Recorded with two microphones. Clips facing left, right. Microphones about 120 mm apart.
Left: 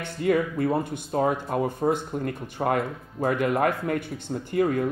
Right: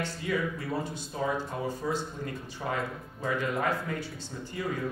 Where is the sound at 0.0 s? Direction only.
55° left (ahead or behind).